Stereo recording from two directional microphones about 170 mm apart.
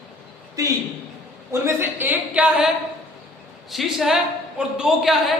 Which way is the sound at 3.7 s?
Centre (ahead or behind).